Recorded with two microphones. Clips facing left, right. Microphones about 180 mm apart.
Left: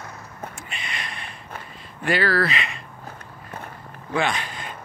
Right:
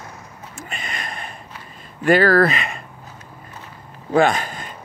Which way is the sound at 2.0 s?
45° right (ahead or behind).